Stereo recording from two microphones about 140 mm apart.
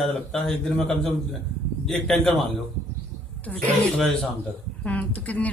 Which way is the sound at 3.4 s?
10° left (ahead or behind).